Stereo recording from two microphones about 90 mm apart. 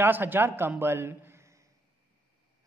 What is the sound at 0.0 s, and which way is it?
A man's voice, 25° right (ahead or behind).